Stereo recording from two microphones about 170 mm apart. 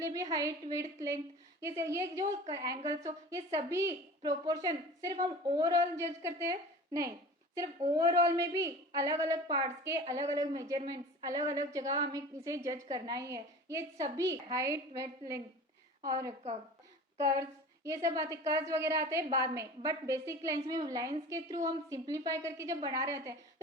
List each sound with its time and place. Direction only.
0.0 s a woman's voice: 20° right (ahead or behind)
17.2 s a woman's voice: 20° right (ahead or behind)